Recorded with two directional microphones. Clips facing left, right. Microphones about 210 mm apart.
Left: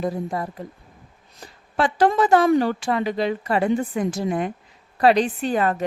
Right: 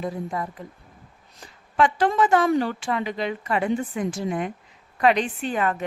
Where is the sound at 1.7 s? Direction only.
40° left (ahead or behind).